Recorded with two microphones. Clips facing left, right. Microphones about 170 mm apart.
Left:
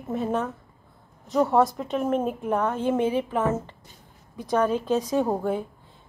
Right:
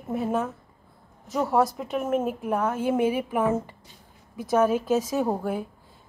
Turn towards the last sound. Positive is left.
turn(degrees=-5)  # may be behind; listen again after turning